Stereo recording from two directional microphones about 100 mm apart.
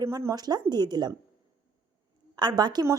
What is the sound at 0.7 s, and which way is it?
Speech, 45° right (ahead or behind).